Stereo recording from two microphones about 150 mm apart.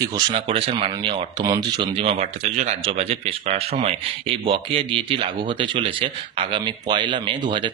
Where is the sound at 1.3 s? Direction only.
25° right (ahead or behind).